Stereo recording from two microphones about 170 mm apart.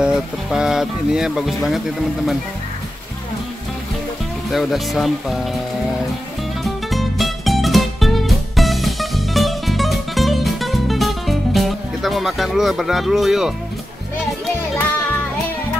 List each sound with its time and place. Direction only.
0.0 s speech: 5° right (ahead or behind)
4.5 s speech: centre (ahead or behind)
6.6 s music: centre (ahead or behind)